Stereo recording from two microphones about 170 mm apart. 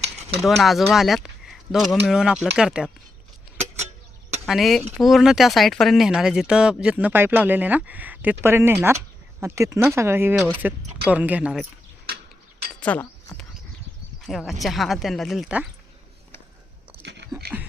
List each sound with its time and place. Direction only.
0.4 s speech: centre (ahead or behind)
4.4 s speech: centre (ahead or behind)
12.8 s speech: 10° left (ahead or behind)
14.2 s speech: centre (ahead or behind)
17.0 s a sound: 90° right